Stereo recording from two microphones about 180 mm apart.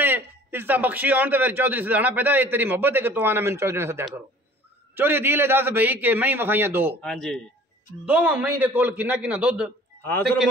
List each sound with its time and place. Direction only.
0.0 s a man's voice: 10° right (ahead or behind)
7.0 s speech: 5° left (ahead or behind)
8.1 s a man's voice: 10° right (ahead or behind)
10.0 s a man's voice: 10° left (ahead or behind)